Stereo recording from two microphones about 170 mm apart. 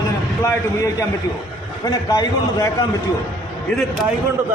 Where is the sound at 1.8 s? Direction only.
20° left (ahead or behind).